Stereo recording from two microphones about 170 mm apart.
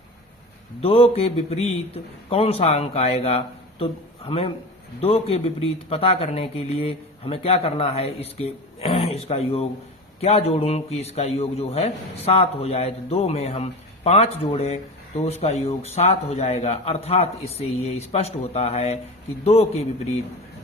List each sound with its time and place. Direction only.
0.8 s a man's voice: 35° left (ahead or behind)